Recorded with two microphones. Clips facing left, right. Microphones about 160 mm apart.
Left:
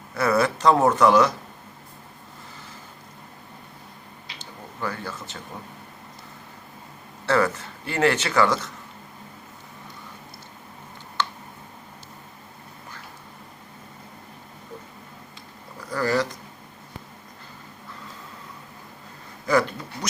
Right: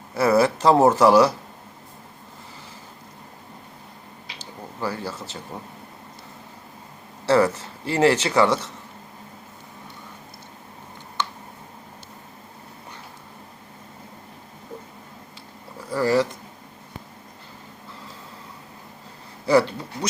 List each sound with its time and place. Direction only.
0.1 s speech: 30° right (ahead or behind)
4.8 s speech: 30° right (ahead or behind)
7.3 s speech: 30° right (ahead or behind)
15.8 s speech: 25° right (ahead or behind)
19.5 s speech: 30° right (ahead or behind)